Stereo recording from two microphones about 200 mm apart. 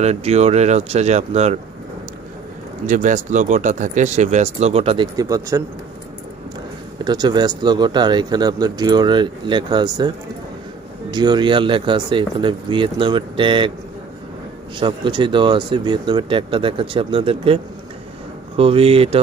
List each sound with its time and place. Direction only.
0.0 s speech: 30° right (ahead or behind)
2.9 s speech: 40° right (ahead or behind); by 5.6 s 15° right (ahead or behind)
7.1 s speech: 20° right (ahead or behind)
14.8 s speech: 25° right (ahead or behind)
18.6 s speech: 30° right (ahead or behind)